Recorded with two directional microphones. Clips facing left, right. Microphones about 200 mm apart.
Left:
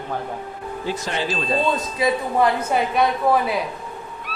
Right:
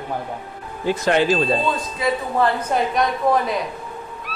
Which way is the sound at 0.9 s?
55° right (ahead or behind).